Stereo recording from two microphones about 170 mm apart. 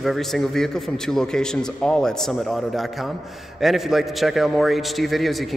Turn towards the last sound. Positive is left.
turn(degrees=0)  # may be behind; listen again after turning